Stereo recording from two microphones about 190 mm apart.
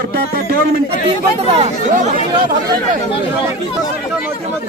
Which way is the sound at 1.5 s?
30° right (ahead or behind).